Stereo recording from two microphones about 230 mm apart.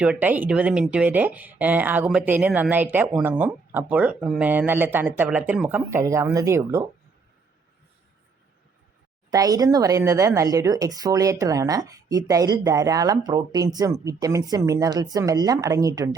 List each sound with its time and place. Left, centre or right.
0.0 s speech: centre
9.3 s speech: centre